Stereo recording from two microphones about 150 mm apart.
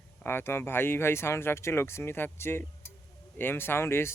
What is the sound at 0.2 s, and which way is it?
Speech, 15° left (ahead or behind).